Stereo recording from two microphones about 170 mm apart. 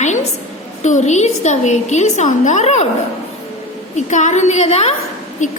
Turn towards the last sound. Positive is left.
turn(degrees=50)  # may be behind; listen again after turning